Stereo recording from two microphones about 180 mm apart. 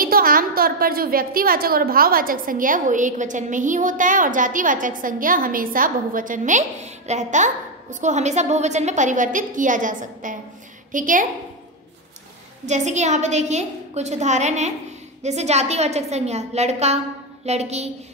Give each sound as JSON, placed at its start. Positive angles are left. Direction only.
{"t": 0.0, "sound": "a woman's voice", "side_deg": -55}
{"t": 12.6, "sound": "a woman's voice", "side_deg": -40}